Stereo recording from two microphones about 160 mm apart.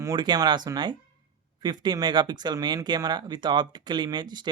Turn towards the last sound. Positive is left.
turn(degrees=-30)  # may be behind; listen again after turning